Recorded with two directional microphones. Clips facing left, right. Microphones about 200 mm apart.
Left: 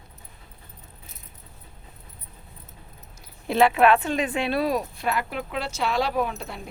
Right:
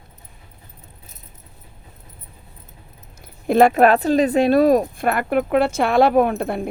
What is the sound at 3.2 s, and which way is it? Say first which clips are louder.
Speech: right 6 dB; 50° right (ahead or behind).